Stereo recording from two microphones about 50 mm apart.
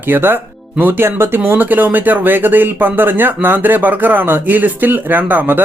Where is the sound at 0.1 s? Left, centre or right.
Right.